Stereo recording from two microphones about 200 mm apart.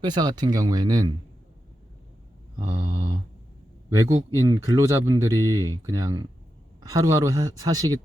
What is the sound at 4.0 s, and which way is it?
Speech, 20° right (ahead or behind).